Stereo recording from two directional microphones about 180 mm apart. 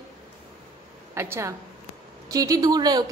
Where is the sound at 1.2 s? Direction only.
15° right (ahead or behind).